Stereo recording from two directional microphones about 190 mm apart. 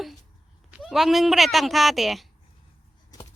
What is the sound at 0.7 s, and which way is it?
Speech, centre (ahead or behind).